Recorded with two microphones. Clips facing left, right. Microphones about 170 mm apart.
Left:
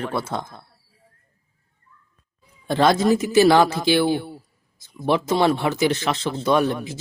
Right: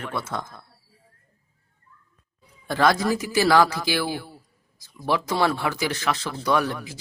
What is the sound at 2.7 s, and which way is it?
Speech, 25° left (ahead or behind).